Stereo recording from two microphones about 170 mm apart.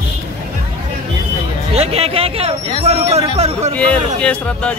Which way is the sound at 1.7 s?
35° right (ahead or behind).